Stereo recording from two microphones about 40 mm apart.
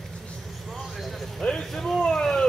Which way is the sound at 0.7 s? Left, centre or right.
Centre.